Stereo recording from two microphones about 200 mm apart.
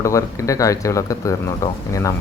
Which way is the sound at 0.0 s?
15° left (ahead or behind).